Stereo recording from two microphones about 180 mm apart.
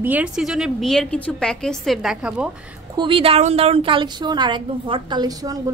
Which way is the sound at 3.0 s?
30° right (ahead or behind).